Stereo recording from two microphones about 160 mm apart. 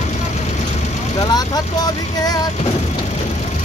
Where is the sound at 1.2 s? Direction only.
25° left (ahead or behind).